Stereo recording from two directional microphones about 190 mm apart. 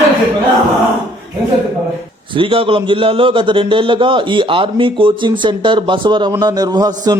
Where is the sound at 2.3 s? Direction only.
25° right (ahead or behind).